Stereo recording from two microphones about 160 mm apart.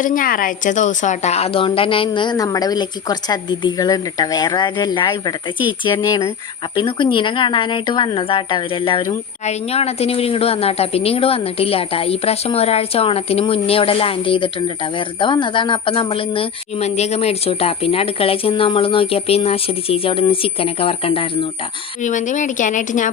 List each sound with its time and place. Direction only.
0.0 s a woman's voice: 60° left (ahead or behind); by 21.2 s 35° left (ahead or behind)
22.0 s speech: 50° left (ahead or behind)